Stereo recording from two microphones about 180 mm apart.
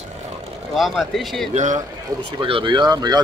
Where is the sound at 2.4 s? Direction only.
30° right (ahead or behind).